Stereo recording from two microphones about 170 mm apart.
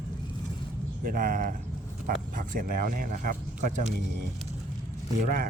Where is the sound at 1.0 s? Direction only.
55° right (ahead or behind).